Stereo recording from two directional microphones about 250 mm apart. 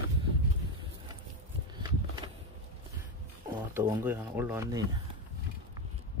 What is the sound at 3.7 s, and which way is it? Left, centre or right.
Speech, centre.